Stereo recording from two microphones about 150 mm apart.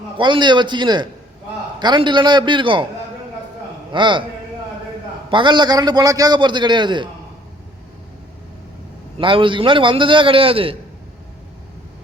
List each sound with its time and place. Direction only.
0.2 s a man's voice: 30° right (ahead or behind)
3.9 s a man's voice: 35° right (ahead or behind)
5.3 s a man's voice: 30° right (ahead or behind)
9.1 s a man's voice: 35° right (ahead or behind)